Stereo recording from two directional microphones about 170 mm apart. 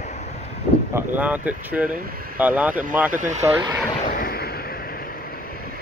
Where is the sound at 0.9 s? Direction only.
10° right (ahead or behind).